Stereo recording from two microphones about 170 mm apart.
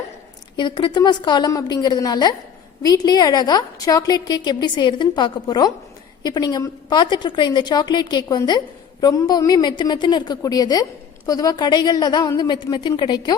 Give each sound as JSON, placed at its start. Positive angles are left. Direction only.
{"t": 0.5, "sound": "a woman's voice", "side_deg": 25}